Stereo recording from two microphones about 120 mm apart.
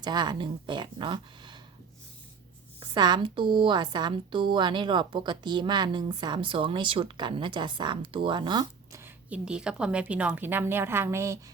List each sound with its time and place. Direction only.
0.0 s speech: 35° right (ahead or behind)
2.8 s speech: 35° right (ahead or behind)
9.3 s a woman's voice: 10° right (ahead or behind)